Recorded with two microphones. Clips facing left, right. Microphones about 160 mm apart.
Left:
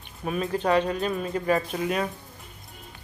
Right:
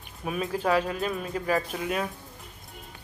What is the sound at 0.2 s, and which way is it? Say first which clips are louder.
A man's voice: left 2 dB; 5° right (ahead or behind).